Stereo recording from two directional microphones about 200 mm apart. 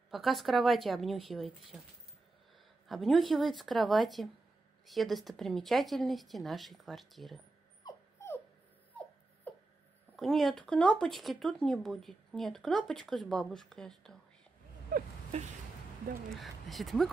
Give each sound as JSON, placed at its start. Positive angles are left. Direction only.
{"t": 0.1, "sound": "speech", "side_deg": 0}
{"t": 2.9, "sound": "speech", "side_deg": 0}
{"t": 7.8, "sound": "dog", "side_deg": 15}
{"t": 9.5, "sound": "a sound", "side_deg": 10}
{"t": 10.1, "sound": "speech", "side_deg": 0}
{"t": 14.9, "sound": "a sound", "side_deg": -45}
{"t": 16.3, "sound": "speech", "side_deg": 0}